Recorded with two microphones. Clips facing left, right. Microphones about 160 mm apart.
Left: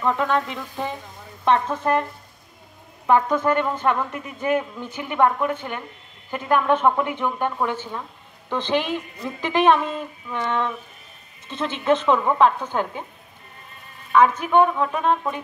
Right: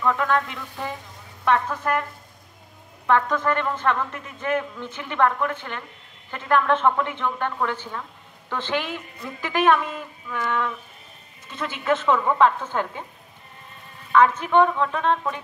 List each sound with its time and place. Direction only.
0.0 s a woman's voice: 20° left (ahead or behind)
3.1 s a woman's voice: 20° left (ahead or behind)
14.1 s speech: 15° left (ahead or behind)